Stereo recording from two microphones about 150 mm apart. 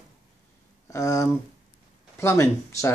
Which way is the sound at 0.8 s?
20° left (ahead or behind).